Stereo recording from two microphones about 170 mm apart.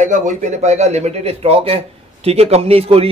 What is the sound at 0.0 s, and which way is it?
A man's voice, 45° right (ahead or behind).